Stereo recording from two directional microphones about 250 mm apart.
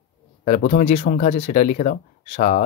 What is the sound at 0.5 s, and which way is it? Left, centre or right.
Speech, left.